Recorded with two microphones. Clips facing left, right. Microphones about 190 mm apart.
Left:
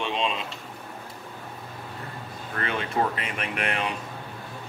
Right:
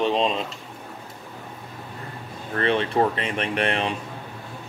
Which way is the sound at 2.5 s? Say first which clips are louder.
Right 7 dB; 30° right (ahead or behind).